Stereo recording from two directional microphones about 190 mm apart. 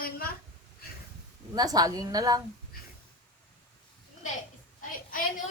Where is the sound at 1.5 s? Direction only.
20° right (ahead or behind).